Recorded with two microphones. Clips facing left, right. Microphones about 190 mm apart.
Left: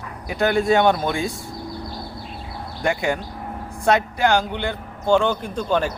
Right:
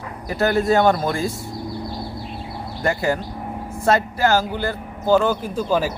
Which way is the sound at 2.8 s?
Centre (ahead or behind).